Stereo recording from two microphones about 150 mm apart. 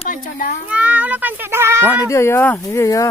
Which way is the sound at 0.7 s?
10° right (ahead or behind).